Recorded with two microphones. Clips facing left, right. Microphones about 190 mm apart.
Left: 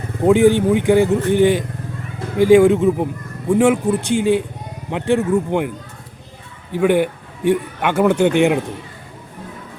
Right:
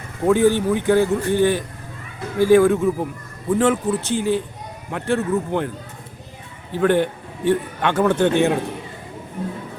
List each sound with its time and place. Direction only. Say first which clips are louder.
0.3 s a man's voice: left 4 dB; 15° left (ahead or behind)